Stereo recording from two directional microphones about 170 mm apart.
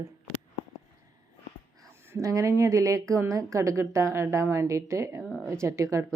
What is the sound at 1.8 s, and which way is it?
Speech, 15° right (ahead or behind).